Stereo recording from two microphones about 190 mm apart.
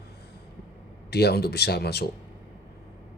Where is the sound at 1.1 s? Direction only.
55° left (ahead or behind).